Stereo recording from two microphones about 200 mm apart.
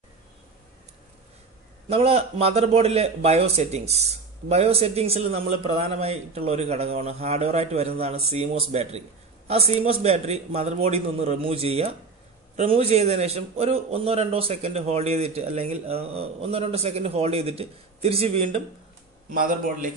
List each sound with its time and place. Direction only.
1.9 s a man's voice: 30° right (ahead or behind)
19.3 s a man's voice: 45° right (ahead or behind)